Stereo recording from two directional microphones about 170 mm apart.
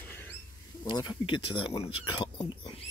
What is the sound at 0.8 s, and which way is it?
Speech, 25° left (ahead or behind).